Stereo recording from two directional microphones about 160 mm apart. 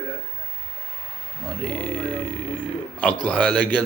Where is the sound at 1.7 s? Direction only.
10° left (ahead or behind).